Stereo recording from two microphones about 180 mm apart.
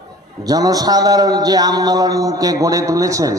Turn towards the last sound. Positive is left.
turn(degrees=-20)  # may be behind; listen again after turning